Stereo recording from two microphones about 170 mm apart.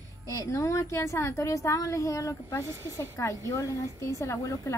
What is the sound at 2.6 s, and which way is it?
Speech, 15° right (ahead or behind).